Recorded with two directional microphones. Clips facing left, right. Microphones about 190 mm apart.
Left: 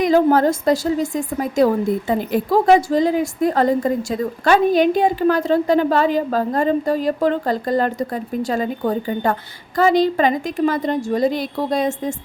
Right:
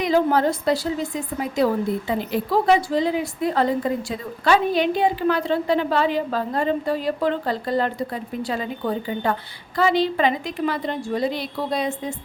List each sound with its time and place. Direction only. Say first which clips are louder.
0.0 s a woman's voice: left 5 dB; 45° left (ahead or behind)